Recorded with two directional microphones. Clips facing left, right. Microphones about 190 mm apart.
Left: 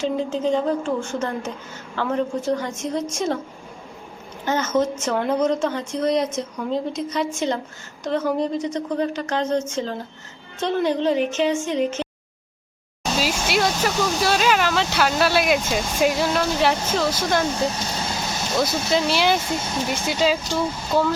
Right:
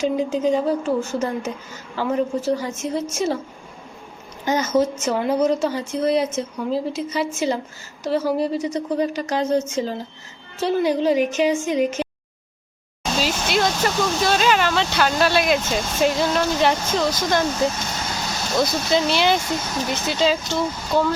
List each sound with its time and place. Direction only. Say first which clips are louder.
0.0 s a woman's voice: right 2 dB; 10° right (ahead or behind)
4.4 s a woman's voice: right 2 dB; 10° right (ahead or behind)
13.1 s speech: even; 5° left (ahead or behind)
18.5 s a woman's voice: right 1 dB; 5° left (ahead or behind)
19.5 s speech: even; 25° left (ahead or behind)
20.1 s speech: right 1 dB; 10° left (ahead or behind)